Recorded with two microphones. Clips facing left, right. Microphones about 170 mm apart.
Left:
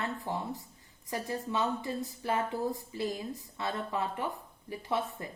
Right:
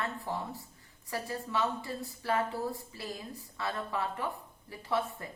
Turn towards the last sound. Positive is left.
turn(degrees=20)  # may be behind; listen again after turning